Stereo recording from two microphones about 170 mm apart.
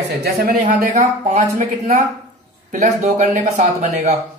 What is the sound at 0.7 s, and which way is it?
Speech, 45° right (ahead or behind).